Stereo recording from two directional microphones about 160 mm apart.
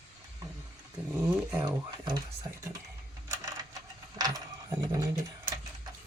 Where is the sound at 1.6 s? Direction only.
25° right (ahead or behind).